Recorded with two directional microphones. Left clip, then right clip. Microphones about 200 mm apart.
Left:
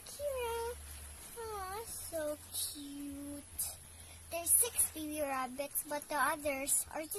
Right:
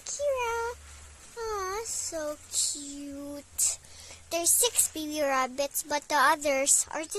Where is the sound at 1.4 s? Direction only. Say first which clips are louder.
Right 10 dB; 40° right (ahead or behind).